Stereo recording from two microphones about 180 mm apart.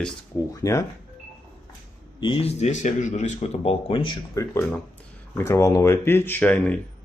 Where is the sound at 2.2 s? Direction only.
30° left (ahead or behind).